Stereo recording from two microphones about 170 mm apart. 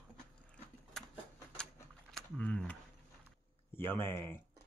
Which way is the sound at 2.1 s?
5° left (ahead or behind).